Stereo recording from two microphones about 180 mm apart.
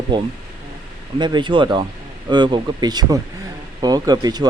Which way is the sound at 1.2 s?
25° right (ahead or behind).